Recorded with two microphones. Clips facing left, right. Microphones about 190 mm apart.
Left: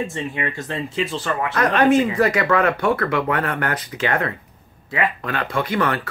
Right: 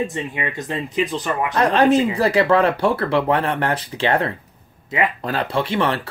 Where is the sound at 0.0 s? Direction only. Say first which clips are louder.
Right 1 dB; 20° right (ahead or behind).